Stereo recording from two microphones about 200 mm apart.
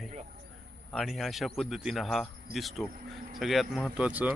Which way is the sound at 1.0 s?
Centre (ahead or behind).